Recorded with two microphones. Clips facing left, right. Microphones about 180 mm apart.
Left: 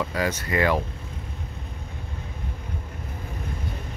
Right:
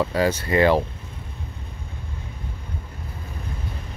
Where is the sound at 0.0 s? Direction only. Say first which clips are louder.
Right 5 dB; 30° right (ahead or behind).